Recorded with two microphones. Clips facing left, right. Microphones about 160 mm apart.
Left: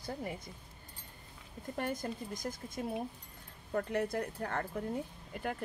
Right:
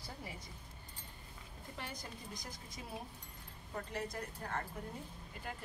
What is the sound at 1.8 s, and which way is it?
Speech, 50° left (ahead or behind).